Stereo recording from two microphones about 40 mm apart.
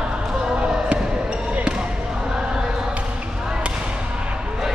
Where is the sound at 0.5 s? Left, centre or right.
Right.